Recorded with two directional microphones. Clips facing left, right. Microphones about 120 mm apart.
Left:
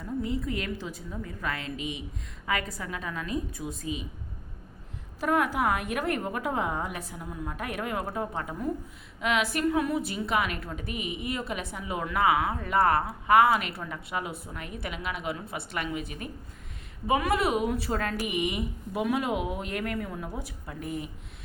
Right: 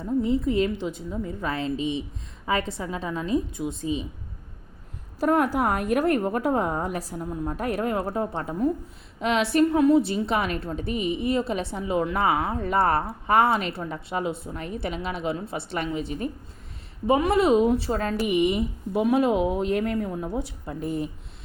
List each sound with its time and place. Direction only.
0.0 s speech: 25° right (ahead or behind)
5.2 s a woman's voice: 40° right (ahead or behind)